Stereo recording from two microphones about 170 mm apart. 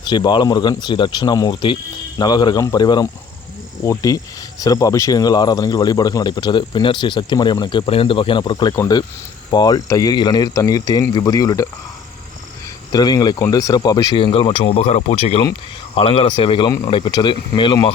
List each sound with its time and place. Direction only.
0.0 s speech: 25° left (ahead or behind)
12.9 s speech: 25° left (ahead or behind)